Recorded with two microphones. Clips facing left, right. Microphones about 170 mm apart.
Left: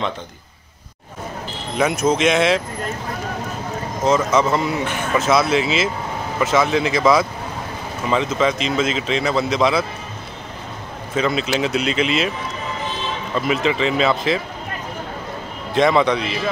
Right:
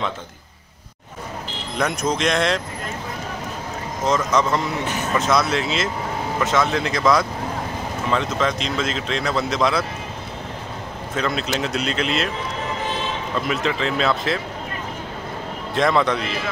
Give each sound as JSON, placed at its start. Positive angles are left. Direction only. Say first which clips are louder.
{"t": 1.8, "sound": "speech", "louder": "left 5 dB", "side_deg": 5}
{"t": 4.0, "sound": "speech", "louder": "left 3 dB", "side_deg": 5}
{"t": 11.1, "sound": "speech", "louder": "left 4 dB", "side_deg": 0}
{"t": 13.5, "sound": "speech", "louder": "left 5 dB", "side_deg": 0}
{"t": 15.7, "sound": "speech", "louder": "left 3 dB", "side_deg": 0}